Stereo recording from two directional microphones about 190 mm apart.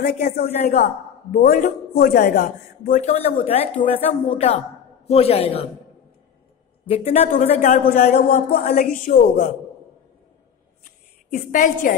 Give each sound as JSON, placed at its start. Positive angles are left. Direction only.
{"t": 0.3, "sound": "a man's voice", "side_deg": 45}
{"t": 7.1, "sound": "a man's voice", "side_deg": 35}
{"t": 11.3, "sound": "speech", "side_deg": 45}